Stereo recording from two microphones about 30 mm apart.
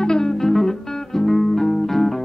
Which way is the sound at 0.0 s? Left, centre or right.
Left.